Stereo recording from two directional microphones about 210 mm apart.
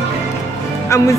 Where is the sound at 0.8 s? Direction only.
15° left (ahead or behind).